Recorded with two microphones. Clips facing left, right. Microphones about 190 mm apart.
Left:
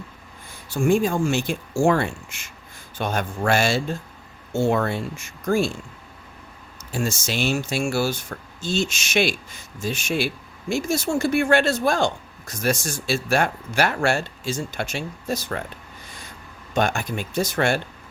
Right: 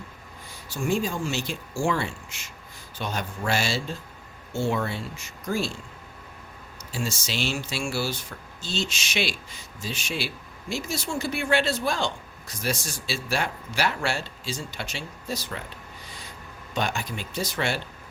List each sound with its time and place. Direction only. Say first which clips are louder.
0.7 s speech: left 7 dB; 55° left (ahead or behind)
6.9 s speech: left 5 dB; 50° left (ahead or behind)
16.7 s speech: left 6 dB; 50° left (ahead or behind)